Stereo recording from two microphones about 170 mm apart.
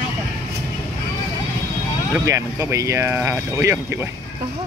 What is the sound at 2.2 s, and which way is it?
Speech, 20° right (ahead or behind).